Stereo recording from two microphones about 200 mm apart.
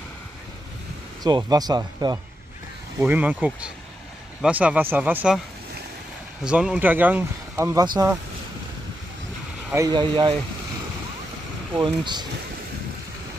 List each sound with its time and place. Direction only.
1.2 s speech: 20° right (ahead or behind)
3.0 s speech: 5° right (ahead or behind)
6.4 s speech: 5° right (ahead or behind)
9.7 s speech: 20° right (ahead or behind)
11.7 s speech: 25° right (ahead or behind)